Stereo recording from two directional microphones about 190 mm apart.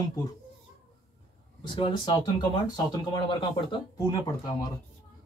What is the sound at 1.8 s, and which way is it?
Speech, 25° left (ahead or behind).